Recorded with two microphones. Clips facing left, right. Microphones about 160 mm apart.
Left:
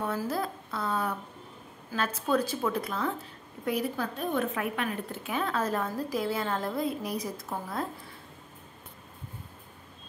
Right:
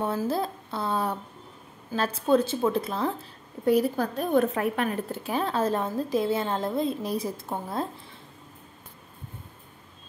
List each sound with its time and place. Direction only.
0.0 s a woman's voice: 30° right (ahead or behind)